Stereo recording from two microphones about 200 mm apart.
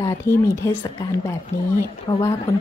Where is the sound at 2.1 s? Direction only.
20° left (ahead or behind).